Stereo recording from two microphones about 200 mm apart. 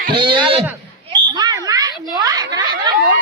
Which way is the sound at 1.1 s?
25° right (ahead or behind).